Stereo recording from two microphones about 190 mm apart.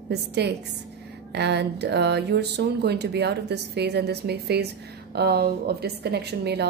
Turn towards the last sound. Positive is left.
turn(degrees=-60)  # may be behind; listen again after turning